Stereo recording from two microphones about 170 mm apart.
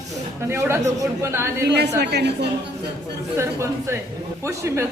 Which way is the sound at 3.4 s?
15° right (ahead or behind).